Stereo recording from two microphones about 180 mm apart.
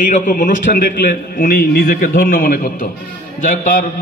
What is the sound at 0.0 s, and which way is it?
A man's voice, 45° left (ahead or behind).